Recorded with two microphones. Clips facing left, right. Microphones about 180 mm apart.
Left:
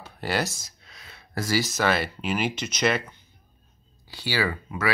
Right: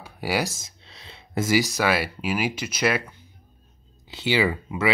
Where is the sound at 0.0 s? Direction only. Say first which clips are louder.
Right 1 dB; 10° right (ahead or behind).